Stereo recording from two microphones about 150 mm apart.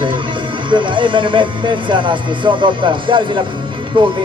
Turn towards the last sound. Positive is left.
turn(degrees=-35)  # may be behind; listen again after turning